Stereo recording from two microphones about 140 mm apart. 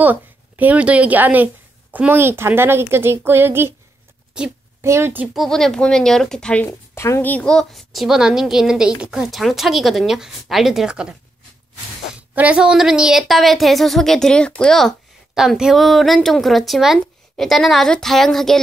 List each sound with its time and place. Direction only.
0.0 s a woman's voice: 10° right (ahead or behind)
4.8 s a woman's voice: 20° right (ahead or behind)
5.3 s a woman's voice: centre (ahead or behind)
12.2 s a woman's voice: 10° right (ahead or behind)